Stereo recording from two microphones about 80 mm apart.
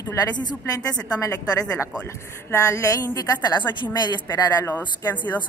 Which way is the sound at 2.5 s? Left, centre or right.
Left.